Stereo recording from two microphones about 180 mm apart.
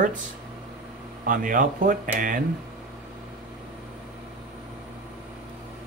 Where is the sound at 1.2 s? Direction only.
50° right (ahead or behind).